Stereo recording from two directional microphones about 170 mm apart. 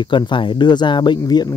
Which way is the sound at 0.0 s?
25° left (ahead or behind).